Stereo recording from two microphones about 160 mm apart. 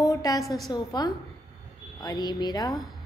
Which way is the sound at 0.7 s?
25° left (ahead or behind).